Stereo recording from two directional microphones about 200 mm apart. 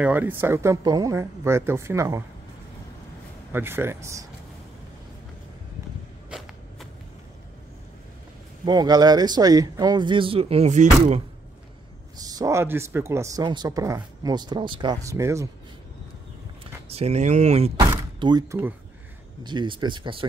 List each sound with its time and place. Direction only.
0.0 s speech: 10° right (ahead or behind)
3.5 s speech: 10° right (ahead or behind)
8.6 s speech: 20° right (ahead or behind); by 11.2 s 35° right (ahead or behind)
12.2 s speech: 20° right (ahead or behind)
16.9 s speech: 30° right (ahead or behind)
17.8 s door: 20° right (ahead or behind)
19.4 s speech: 20° right (ahead or behind)